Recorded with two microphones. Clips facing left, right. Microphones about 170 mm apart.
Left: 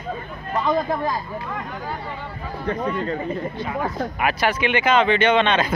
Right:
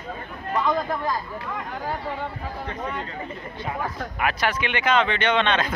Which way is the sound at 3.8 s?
25° left (ahead or behind).